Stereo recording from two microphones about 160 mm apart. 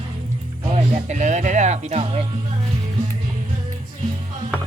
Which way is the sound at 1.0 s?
45° right (ahead or behind).